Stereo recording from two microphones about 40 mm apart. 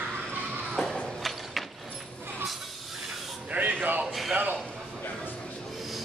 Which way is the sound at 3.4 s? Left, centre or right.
Right.